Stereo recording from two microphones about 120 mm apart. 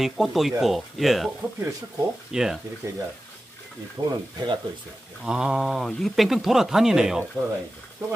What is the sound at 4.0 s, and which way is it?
Speech, 20° right (ahead or behind).